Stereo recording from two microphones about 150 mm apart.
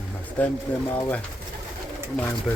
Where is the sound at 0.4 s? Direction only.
10° left (ahead or behind).